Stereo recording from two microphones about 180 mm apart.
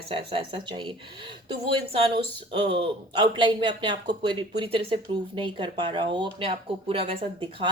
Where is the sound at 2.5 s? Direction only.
30° right (ahead or behind).